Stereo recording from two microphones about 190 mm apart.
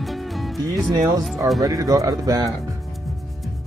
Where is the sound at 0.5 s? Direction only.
Centre (ahead or behind).